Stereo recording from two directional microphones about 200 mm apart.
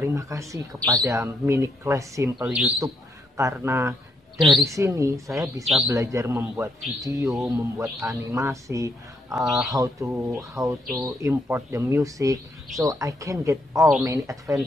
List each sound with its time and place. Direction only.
0.0 s speech: 15° right (ahead or behind)
2.3 s speech: centre (ahead or behind)
3.3 s speech: 15° right (ahead or behind)
4.4 s speech: centre (ahead or behind)
4.6 s speech: 15° right (ahead or behind)
9.3 s speech: centre (ahead or behind)
9.7 s speech: 15° right (ahead or behind)